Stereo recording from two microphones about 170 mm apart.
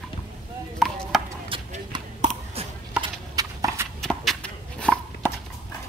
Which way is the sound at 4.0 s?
5° left (ahead or behind).